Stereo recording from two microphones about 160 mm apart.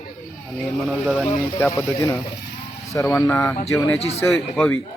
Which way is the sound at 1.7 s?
20° left (ahead or behind).